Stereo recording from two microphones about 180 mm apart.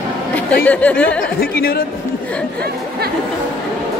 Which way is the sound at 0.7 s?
10° left (ahead or behind).